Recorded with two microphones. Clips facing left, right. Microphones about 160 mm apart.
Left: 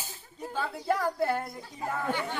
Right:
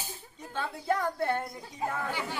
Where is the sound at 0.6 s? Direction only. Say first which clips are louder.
Left 1 dB; 5° left (ahead or behind).